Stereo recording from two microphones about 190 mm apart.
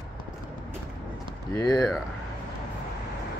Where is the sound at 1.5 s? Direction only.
20° left (ahead or behind).